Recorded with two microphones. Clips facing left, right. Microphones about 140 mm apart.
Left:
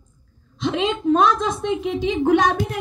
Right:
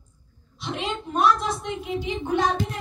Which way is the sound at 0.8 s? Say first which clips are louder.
Left 6 dB; 90° left.